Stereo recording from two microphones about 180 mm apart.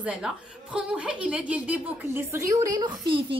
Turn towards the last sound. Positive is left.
turn(degrees=-25)  # may be behind; listen again after turning